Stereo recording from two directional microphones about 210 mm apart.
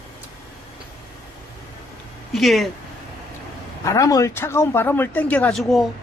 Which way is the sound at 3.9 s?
15° left (ahead or behind).